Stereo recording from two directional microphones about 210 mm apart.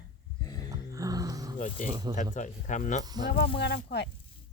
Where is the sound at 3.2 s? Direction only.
50° left (ahead or behind).